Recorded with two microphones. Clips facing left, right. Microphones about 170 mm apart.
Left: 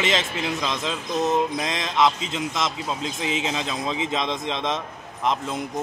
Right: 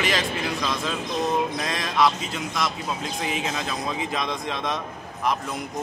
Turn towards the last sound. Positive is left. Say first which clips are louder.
# left 2 dB
turn(degrees=20)  # may be behind; listen again after turning